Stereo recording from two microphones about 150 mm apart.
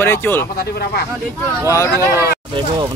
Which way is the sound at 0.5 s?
90° left.